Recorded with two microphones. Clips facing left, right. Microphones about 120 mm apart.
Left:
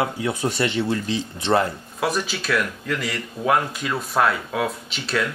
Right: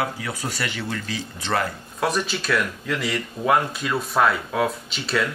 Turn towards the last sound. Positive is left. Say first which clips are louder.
# even
turn(degrees=0)  # may be behind; listen again after turning